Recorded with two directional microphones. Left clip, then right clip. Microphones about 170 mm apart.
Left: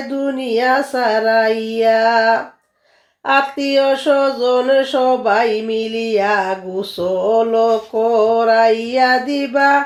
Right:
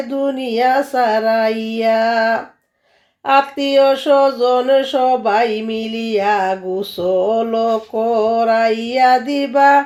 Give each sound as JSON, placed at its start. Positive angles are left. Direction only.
{"t": 0.2, "sound": "speech", "side_deg": -35}